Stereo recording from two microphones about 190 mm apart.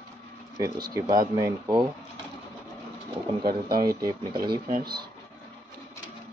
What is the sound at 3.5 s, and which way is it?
Speech, 50° right (ahead or behind).